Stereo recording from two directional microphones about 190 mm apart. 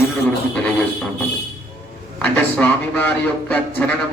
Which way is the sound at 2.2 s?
10° left (ahead or behind).